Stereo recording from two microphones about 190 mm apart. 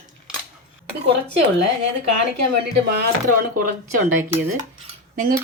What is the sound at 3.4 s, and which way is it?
Speech, 50° right (ahead or behind).